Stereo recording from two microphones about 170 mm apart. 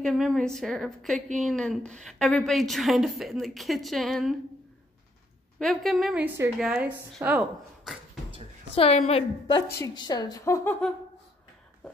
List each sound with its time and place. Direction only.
0.0 s a woman's voice: centre (ahead or behind)
5.6 s a woman's voice: centre (ahead or behind)
8.7 s a woman's voice: 35° left (ahead or behind)
9.6 s a woman's voice: 20° left (ahead or behind)